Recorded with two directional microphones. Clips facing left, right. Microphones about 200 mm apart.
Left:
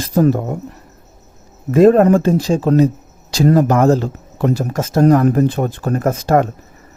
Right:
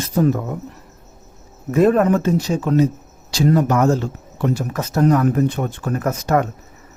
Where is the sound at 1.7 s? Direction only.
30° left (ahead or behind).